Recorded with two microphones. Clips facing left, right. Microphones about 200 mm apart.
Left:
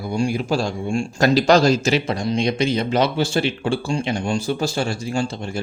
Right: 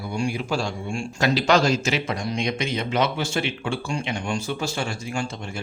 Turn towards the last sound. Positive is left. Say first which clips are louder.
# left 6 dB
turn(degrees=35)  # may be behind; listen again after turning